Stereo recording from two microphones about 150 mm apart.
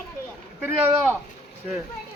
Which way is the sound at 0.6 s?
15° right (ahead or behind).